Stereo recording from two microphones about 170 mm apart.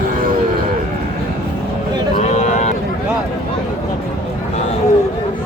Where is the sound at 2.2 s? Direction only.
40° left (ahead or behind).